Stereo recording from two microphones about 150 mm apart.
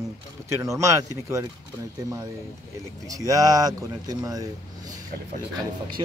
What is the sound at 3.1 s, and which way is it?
Speech, 25° right (ahead or behind).